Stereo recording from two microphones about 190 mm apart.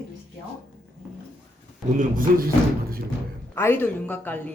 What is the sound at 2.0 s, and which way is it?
Speech, 45° right (ahead or behind).